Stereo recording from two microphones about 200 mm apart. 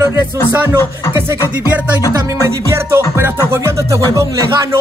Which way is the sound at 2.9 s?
10° right (ahead or behind).